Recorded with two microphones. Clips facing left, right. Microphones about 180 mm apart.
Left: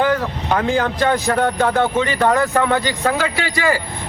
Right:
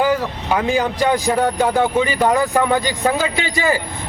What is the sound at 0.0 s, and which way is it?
Speech, 10° right (ahead or behind).